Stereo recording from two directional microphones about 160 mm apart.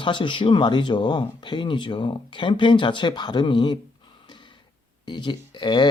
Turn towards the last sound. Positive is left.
turn(degrees=30)  # may be behind; listen again after turning